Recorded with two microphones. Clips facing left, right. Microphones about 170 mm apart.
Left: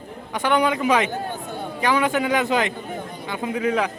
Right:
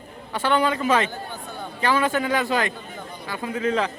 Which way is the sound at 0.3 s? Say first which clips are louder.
Left 1 dB; 15° left (ahead or behind).